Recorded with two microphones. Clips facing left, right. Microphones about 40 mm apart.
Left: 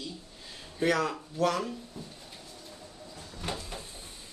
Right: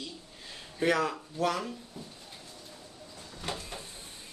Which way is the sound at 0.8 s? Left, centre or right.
Right.